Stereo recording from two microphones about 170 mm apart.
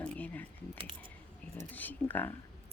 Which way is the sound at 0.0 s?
10° left (ahead or behind).